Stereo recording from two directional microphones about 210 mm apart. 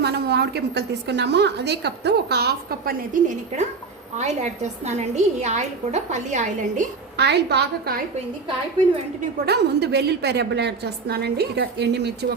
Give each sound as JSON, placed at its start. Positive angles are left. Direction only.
{"t": 0.0, "sound": "a woman's voice", "side_deg": -50}
{"t": 7.2, "sound": "a woman's voice", "side_deg": -50}
{"t": 9.5, "sound": "a woman's voice", "side_deg": -50}